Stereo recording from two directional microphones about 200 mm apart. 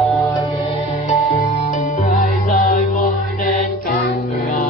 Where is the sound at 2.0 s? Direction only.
35° left (ahead or behind).